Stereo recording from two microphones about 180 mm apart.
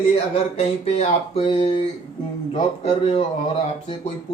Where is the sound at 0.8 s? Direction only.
35° left (ahead or behind).